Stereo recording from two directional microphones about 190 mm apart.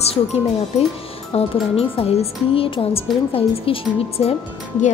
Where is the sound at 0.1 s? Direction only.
30° left (ahead or behind).